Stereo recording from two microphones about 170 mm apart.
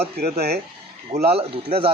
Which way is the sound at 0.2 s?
70° right (ahead or behind).